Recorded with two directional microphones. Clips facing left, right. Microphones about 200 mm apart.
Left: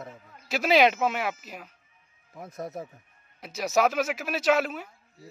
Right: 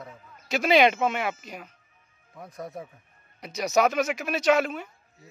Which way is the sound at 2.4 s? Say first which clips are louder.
Left 2 dB; 25° left (ahead or behind).